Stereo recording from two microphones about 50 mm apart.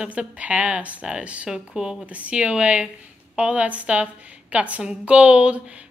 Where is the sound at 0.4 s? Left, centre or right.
Right.